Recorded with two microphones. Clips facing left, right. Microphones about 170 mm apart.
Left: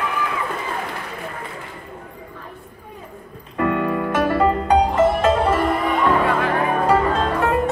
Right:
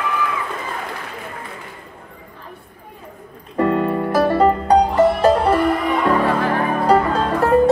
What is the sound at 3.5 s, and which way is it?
Music, 35° right (ahead or behind).